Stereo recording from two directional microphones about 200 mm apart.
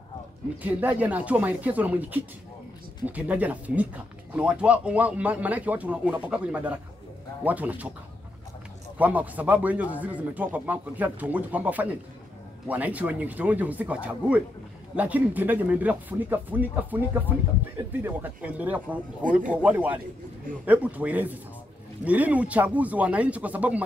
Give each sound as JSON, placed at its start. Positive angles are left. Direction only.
{"t": 0.6, "sound": "speech", "side_deg": -10}
{"t": 8.9, "sound": "speech", "side_deg": -10}